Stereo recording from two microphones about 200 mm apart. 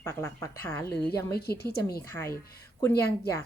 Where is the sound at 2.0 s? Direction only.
10° left (ahead or behind).